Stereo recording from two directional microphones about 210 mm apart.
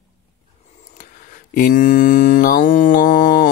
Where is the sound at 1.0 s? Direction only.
40° left (ahead or behind).